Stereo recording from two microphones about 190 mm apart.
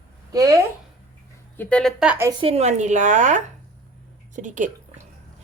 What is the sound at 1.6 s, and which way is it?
Speech, 5° left (ahead or behind).